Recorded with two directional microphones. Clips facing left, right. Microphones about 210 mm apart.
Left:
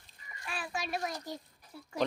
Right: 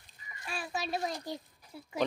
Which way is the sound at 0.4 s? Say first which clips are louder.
Right 1 dB; 25° right (ahead or behind).